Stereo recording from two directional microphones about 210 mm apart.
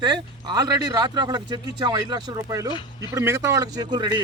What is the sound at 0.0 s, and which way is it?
A man's voice, 20° right (ahead or behind).